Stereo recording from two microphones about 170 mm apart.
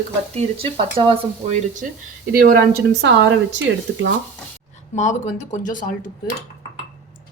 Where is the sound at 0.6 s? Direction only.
30° right (ahead or behind).